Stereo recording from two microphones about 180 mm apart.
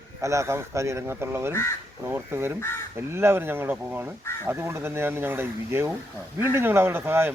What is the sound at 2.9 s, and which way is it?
Speech, 15° right (ahead or behind).